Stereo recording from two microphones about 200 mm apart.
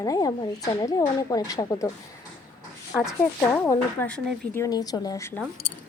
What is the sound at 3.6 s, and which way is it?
Speech, 10° left (ahead or behind).